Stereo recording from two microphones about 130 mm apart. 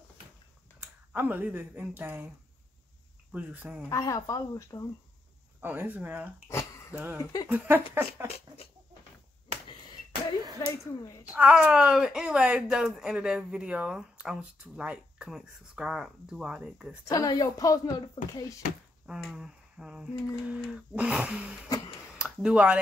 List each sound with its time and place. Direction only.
1.1 s a woman's voice: 15° right (ahead or behind)
3.9 s a woman's voice: 25° left (ahead or behind)
5.6 s a woman's voice: 15° right (ahead or behind)
10.6 s speech: 30° left (ahead or behind)
11.3 s speech: 10° right (ahead or behind)
17.0 s a woman's voice: 25° left (ahead or behind)
19.0 s a woman's voice: 5° right (ahead or behind)